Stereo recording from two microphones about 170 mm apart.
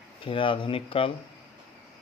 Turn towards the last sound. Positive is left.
turn(degrees=30)  # may be behind; listen again after turning